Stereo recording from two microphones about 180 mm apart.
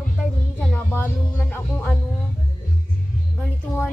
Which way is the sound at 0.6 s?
10° left (ahead or behind).